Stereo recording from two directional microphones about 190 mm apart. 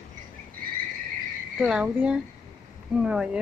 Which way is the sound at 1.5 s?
5° right (ahead or behind).